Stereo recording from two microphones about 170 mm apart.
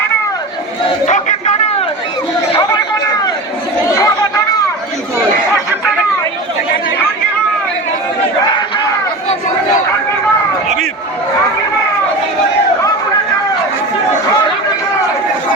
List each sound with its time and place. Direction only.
1.0 s battle cry: 45° left (ahead or behind)
2.5 s a sound: 25° left (ahead or behind)
3.9 s chatter: 20° left (ahead or behind)